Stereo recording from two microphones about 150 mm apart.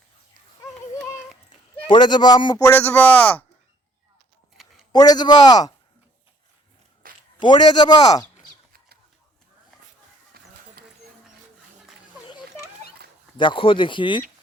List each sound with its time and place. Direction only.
1.9 s speech: 30° left (ahead or behind)
2.6 s a man's voice: 10° left (ahead or behind)
4.9 s speech: 25° left (ahead or behind)
7.3 s speech: 30° left (ahead or behind)
10.3 s a sound: 90° right
13.3 s speech: 35° left (ahead or behind)